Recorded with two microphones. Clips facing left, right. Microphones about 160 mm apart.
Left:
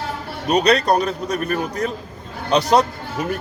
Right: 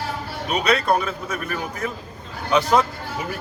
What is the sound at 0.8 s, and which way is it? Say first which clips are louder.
Speech: left 3 dB; 40° left (ahead or behind).